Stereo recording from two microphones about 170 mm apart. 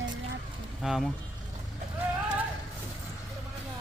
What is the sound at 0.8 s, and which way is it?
Speech, centre (ahead or behind).